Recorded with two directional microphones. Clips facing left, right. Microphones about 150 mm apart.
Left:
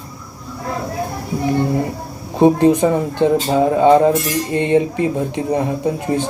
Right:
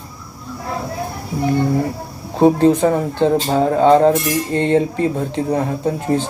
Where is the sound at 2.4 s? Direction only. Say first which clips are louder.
Even; 15° left (ahead or behind).